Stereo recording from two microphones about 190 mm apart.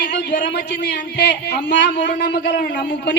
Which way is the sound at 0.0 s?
65° left (ahead or behind).